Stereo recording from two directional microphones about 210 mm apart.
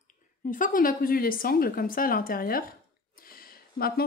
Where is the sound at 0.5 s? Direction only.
40° left (ahead or behind).